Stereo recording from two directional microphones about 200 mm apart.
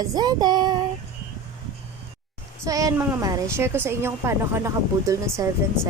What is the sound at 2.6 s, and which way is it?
A woman's voice, 15° right (ahead or behind).